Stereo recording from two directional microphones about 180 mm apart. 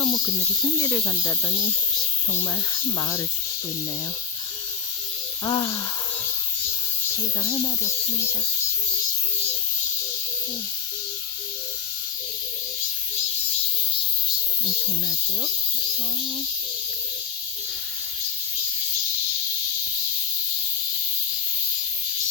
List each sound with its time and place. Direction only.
0.0 s speech: 20° left (ahead or behind)
5.5 s speech: 20° left (ahead or behind)
7.4 s speech: 15° left (ahead or behind)